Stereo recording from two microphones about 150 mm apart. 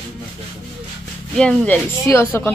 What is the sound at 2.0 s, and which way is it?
Speech, 15° left (ahead or behind).